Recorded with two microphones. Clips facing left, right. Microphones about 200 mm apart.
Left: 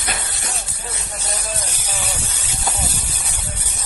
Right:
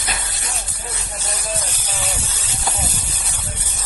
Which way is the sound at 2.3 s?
15° left (ahead or behind).